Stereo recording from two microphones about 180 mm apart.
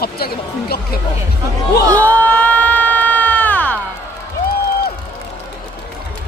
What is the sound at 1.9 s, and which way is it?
Crowd, 10° left (ahead or behind).